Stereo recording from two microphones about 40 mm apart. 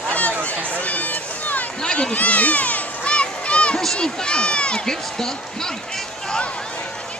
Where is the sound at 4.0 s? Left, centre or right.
Left.